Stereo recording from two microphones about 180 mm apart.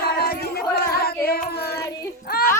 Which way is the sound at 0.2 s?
60° left (ahead or behind).